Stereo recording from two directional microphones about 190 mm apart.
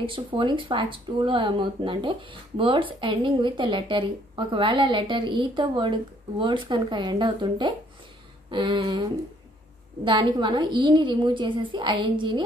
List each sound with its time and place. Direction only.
0.0 s speech: 25° right (ahead or behind)